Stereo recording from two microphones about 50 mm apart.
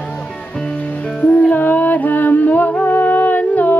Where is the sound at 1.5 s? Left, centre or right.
Left.